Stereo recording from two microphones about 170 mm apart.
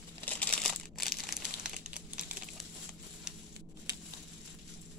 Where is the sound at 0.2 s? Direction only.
10° left (ahead or behind).